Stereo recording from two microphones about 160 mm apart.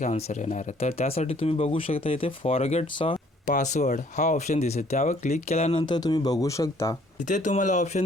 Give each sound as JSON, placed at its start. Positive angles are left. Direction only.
{"t": 0.0, "sound": "speech", "side_deg": 45}
{"t": 3.4, "sound": "speech", "side_deg": 50}
{"t": 5.8, "sound": "speech", "side_deg": 25}
{"t": 7.3, "sound": "speech", "side_deg": 50}